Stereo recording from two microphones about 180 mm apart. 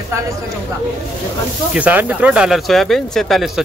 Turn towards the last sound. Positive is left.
turn(degrees=0)  # may be behind; listen again after turning